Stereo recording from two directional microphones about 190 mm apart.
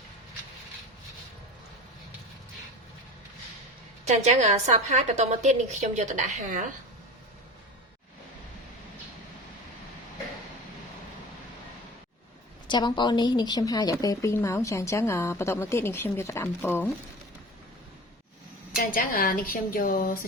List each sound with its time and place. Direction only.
4.0 s a woman's voice: 40° right (ahead or behind)
12.6 s a woman's voice: 25° left (ahead or behind)
18.8 s a woman's voice: 50° left (ahead or behind)